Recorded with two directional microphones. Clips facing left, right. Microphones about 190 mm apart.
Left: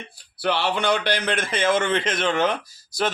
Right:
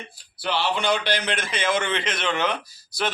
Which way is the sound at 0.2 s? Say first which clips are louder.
Left 3 dB; 60° left (ahead or behind).